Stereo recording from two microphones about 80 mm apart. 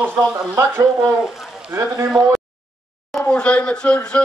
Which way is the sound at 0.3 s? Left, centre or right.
Right.